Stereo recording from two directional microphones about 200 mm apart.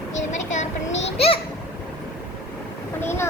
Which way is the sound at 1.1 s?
30° left (ahead or behind).